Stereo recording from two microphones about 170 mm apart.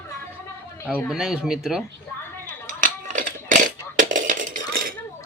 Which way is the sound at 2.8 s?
50° right (ahead or behind).